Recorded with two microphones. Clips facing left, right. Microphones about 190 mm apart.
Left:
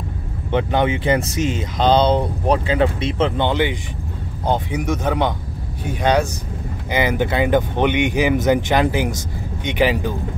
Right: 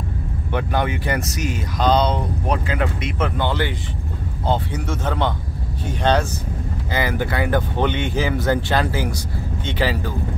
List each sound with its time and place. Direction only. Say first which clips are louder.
0.5 s speech: left 4 dB; 20° left (ahead or behind)